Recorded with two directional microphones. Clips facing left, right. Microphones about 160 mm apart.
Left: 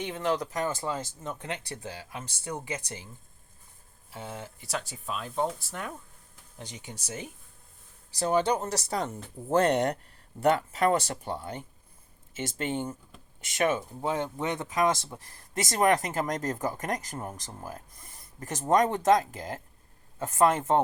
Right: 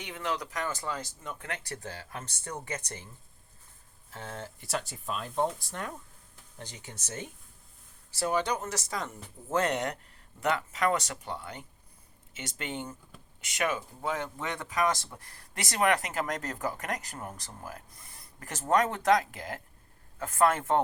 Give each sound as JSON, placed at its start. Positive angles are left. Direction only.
{"t": 0.0, "sound": "speech", "side_deg": 30}
{"t": 4.1, "sound": "speech", "side_deg": 10}
{"t": 8.3, "sound": "speech", "side_deg": 30}
{"t": 11.3, "sound": "speech", "side_deg": 45}
{"t": 13.6, "sound": "speech", "side_deg": 25}